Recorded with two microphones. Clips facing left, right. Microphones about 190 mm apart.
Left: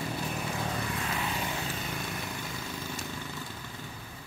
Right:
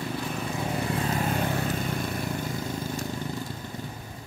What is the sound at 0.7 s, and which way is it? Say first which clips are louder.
Vehicle: right 6 dB; 35° right (ahead or behind).